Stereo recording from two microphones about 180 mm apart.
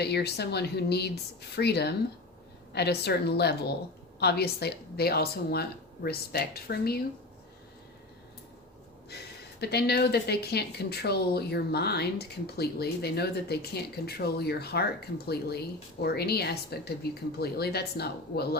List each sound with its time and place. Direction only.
0.0 s speech: 65° left (ahead or behind)
9.0 s speech: 65° left (ahead or behind)